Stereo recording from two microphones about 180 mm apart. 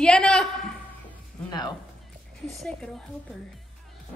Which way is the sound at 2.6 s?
5° left (ahead or behind).